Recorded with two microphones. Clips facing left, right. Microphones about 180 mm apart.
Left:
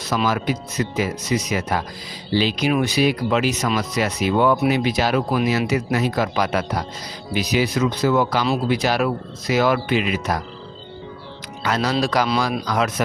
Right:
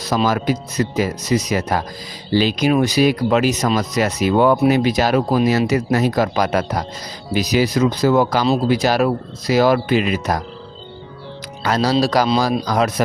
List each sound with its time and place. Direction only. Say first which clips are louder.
0.0 s speech: right 3 dB; 35° right (ahead or behind)
11.6 s speech: right 4 dB; 35° right (ahead or behind)